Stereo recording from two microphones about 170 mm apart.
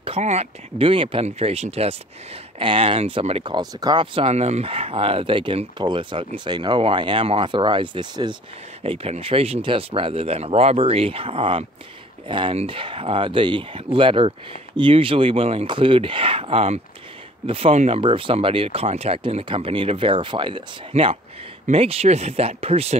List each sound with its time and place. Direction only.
0.0 s speech: 35° right (ahead or behind)